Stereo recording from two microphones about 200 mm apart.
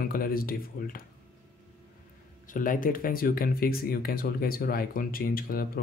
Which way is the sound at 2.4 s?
40° left (ahead or behind).